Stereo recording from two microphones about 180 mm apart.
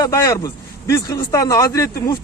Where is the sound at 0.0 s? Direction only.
20° left (ahead or behind).